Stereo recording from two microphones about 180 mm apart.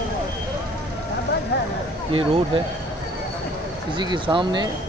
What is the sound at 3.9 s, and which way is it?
Speech, 25° right (ahead or behind).